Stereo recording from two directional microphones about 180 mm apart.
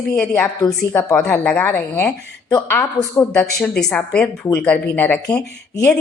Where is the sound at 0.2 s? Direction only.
5° left (ahead or behind).